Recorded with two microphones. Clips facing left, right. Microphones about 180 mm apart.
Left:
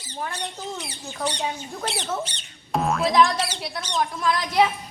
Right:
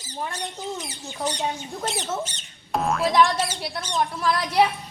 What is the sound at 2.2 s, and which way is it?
Speech, 45° right (ahead or behind).